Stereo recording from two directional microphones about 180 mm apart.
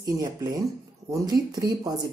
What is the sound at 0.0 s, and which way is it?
A woman's voice, 20° right (ahead or behind).